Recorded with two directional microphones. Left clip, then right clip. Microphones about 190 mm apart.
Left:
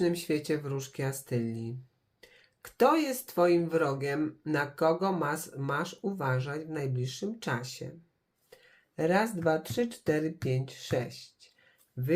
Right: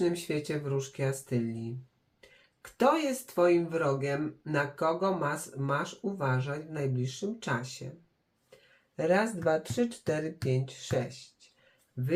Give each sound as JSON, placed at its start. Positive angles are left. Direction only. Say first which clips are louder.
{"t": 0.0, "sound": "speech", "louder": "left 1 dB", "side_deg": 40}
{"t": 9.0, "sound": "speech", "louder": "even", "side_deg": 40}